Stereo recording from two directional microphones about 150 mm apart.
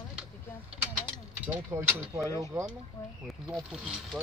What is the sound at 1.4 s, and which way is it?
Speech, 15° right (ahead or behind).